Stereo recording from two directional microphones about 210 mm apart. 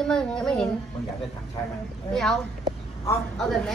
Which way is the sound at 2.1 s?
Centre (ahead or behind).